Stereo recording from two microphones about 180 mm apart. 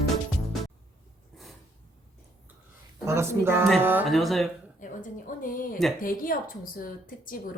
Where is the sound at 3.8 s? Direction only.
10° right (ahead or behind).